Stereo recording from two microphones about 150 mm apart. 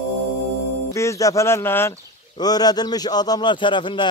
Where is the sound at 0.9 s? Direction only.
20° left (ahead or behind).